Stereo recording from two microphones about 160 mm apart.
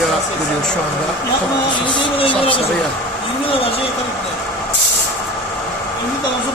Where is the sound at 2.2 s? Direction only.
35° left (ahead or behind).